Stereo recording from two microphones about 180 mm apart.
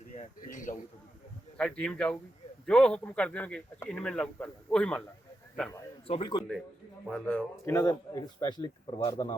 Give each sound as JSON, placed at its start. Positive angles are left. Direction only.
{"t": 0.2, "sound": "speech", "side_deg": 45}
{"t": 1.5, "sound": "speech", "side_deg": 5}
{"t": 6.1, "sound": "speech", "side_deg": 30}
{"t": 7.1, "sound": "speech", "side_deg": 5}
{"t": 7.7, "sound": "speech", "side_deg": 20}